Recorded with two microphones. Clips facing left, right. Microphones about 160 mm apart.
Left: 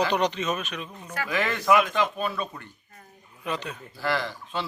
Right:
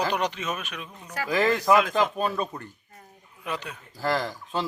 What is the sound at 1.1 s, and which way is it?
Speech, 35° right (ahead or behind).